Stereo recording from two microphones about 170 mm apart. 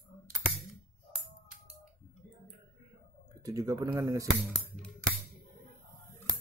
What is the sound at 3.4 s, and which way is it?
Speech, 20° right (ahead or behind).